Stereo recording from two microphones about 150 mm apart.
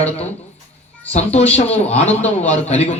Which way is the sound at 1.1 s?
45° left (ahead or behind).